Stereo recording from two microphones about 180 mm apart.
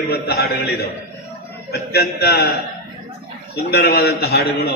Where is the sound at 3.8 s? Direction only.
60° left (ahead or behind).